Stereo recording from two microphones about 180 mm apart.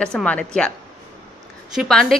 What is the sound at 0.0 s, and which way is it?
Speech, 5° left (ahead or behind).